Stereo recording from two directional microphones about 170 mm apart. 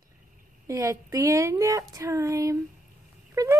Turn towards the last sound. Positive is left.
turn(degrees=-20)  # may be behind; listen again after turning